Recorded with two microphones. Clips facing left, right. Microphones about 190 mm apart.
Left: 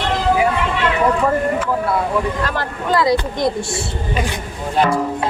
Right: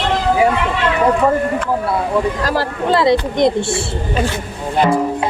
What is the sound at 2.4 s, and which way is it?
Speech, 30° right (ahead or behind).